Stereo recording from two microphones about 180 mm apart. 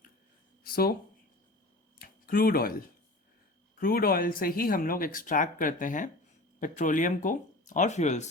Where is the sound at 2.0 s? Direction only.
55° left (ahead or behind).